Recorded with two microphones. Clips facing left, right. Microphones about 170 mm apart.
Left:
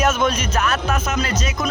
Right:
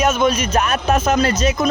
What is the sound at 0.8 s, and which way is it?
Speech, 35° right (ahead or behind).